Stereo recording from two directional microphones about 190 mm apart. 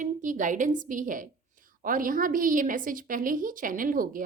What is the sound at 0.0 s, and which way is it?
A woman's voice, 40° right (ahead or behind).